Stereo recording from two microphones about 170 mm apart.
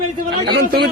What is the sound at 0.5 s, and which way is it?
Speech, 85° right.